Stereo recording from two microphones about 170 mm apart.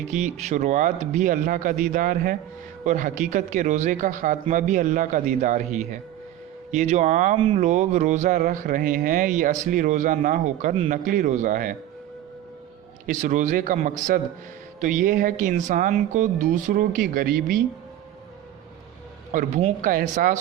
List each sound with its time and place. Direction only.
0.1 s speech: 45° right (ahead or behind)
7.3 s speech: 30° right (ahead or behind)
7.6 s speech: 45° right (ahead or behind)
13.1 s speech: 50° right (ahead or behind)
19.3 s speech: 45° right (ahead or behind)